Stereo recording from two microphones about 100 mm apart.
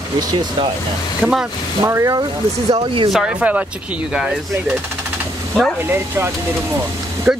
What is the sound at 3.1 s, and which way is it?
Speech, 10° right (ahead or behind).